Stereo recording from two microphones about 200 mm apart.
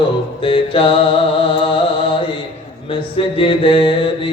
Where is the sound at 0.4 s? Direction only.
25° left (ahead or behind).